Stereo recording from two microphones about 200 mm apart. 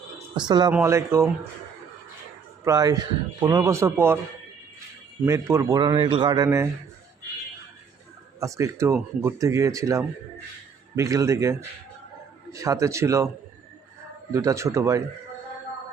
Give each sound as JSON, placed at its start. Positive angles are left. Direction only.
{"t": 0.3, "sound": "speech", "side_deg": -20}
{"t": 2.6, "sound": "speech", "side_deg": -15}
{"t": 5.2, "sound": "speech", "side_deg": -15}
{"t": 8.4, "sound": "speech", "side_deg": -15}
{"t": 12.5, "sound": "speech", "side_deg": -15}
{"t": 14.3, "sound": "speech", "side_deg": -15}